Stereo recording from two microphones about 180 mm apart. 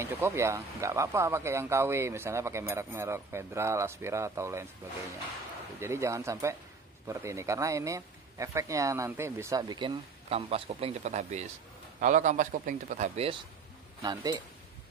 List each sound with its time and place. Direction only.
0.0 s speech: 15° right (ahead or behind)
5.8 s speech: 15° right (ahead or behind); by 13.4 s 35° right (ahead or behind)
14.0 s speech: 20° right (ahead or behind)